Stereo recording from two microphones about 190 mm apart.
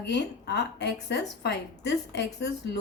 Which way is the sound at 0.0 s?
60° left (ahead or behind).